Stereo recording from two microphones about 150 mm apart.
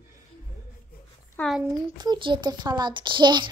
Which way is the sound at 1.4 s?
15° left (ahead or behind).